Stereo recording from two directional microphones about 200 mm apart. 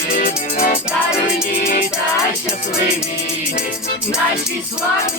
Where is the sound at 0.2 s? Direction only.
45° left (ahead or behind).